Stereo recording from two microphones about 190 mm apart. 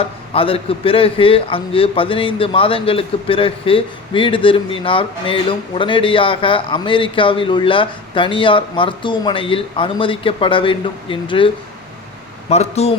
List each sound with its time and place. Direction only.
0.0 s a man's voice: 30° left (ahead or behind)